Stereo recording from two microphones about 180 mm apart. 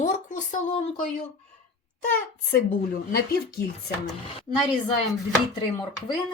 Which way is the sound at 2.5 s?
60° left (ahead or behind).